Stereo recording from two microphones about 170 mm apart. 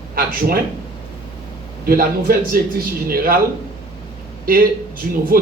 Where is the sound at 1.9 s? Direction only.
60° right (ahead or behind).